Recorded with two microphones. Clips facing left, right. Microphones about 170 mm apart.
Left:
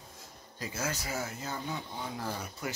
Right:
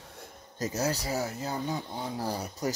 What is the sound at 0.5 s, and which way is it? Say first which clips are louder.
Speech: right 6 dB; 40° right (ahead or behind).